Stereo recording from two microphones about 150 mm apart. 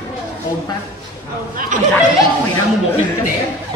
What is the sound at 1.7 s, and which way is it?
Speech, 60° right (ahead or behind).